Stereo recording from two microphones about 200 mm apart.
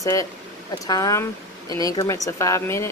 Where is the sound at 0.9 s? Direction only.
15° left (ahead or behind).